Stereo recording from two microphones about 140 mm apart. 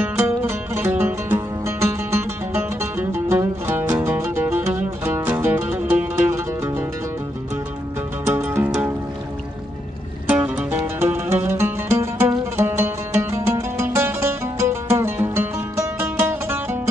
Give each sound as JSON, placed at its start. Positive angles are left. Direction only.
{"t": 0.0, "sound": "music", "side_deg": -15}
{"t": 8.3, "sound": "music", "side_deg": -20}
{"t": 10.2, "sound": "music", "side_deg": -10}